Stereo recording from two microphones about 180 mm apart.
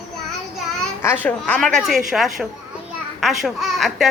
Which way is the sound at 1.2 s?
5° left (ahead or behind).